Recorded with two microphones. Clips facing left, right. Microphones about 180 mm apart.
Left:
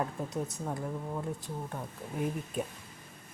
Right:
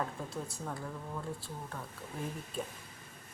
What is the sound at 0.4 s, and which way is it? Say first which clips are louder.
Speech: left 5 dB; 20° left (ahead or behind).